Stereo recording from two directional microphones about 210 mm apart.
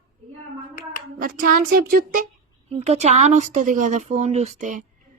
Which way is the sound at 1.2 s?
45° right (ahead or behind).